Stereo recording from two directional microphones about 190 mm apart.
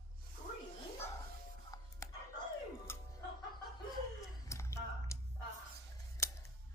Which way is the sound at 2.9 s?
15° left (ahead or behind).